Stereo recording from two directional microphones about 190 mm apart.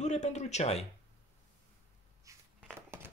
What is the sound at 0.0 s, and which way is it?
Speech, 35° left (ahead or behind).